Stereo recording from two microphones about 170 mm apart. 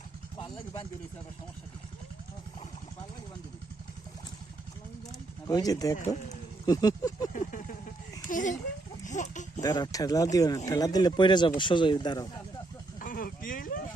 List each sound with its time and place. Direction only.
5.5 s speech: 20° left (ahead or behind)
8.3 s a child's voice: 50° left (ahead or behind)
9.6 s speech: 20° left (ahead or behind)
13.0 s a sound: 55° left (ahead or behind)